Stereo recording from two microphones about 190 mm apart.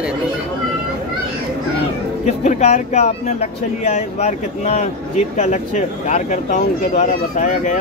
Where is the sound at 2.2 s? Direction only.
35° left (ahead or behind).